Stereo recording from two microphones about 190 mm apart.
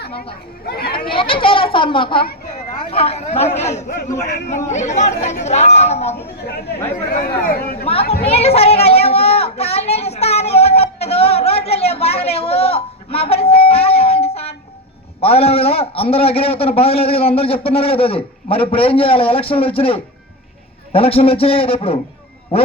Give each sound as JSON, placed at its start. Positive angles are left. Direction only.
{"t": 0.6, "sound": "speech", "side_deg": 55}
{"t": 0.9, "sound": "children playing", "side_deg": 25}
{"t": 2.9, "sound": "a man's voice", "side_deg": 30}
{"t": 7.1, "sound": "speech", "side_deg": 50}
{"t": 8.3, "sound": "a sound", "side_deg": 30}
{"t": 15.2, "sound": "a man's voice", "side_deg": 30}